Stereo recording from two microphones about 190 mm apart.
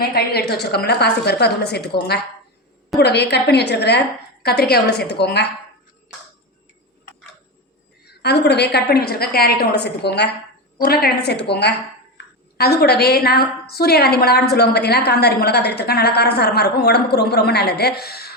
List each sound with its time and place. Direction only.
0.0 s a woman's voice: 55° left (ahead or behind)
8.2 s a woman's voice: 60° left (ahead or behind)